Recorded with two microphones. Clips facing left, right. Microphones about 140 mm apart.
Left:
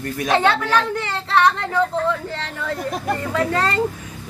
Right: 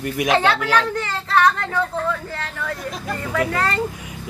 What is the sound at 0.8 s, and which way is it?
Speech, 20° left (ahead or behind).